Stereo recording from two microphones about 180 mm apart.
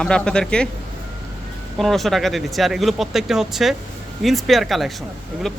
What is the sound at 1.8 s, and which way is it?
Speech, centre (ahead or behind).